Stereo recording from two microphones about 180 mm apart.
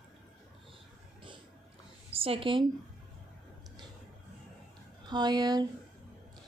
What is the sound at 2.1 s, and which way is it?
Speech, 30° right (ahead or behind).